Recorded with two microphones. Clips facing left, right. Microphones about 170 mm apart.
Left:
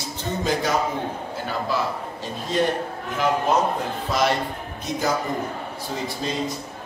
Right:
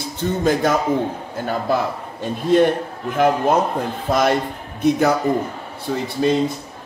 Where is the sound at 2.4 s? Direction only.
55° right (ahead or behind).